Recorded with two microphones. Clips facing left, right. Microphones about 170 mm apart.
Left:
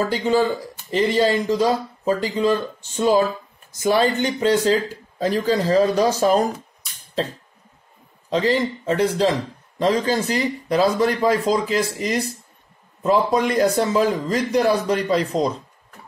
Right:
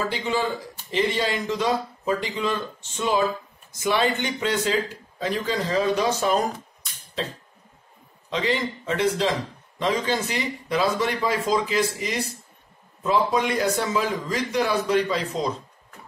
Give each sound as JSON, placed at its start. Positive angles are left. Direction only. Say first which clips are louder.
{"t": 0.1, "sound": "speech", "louder": "left 6 dB", "side_deg": 40}
{"t": 3.8, "sound": "speech", "louder": "left 5 dB", "side_deg": 35}
{"t": 8.3, "sound": "speech", "louder": "left 6 dB", "side_deg": 40}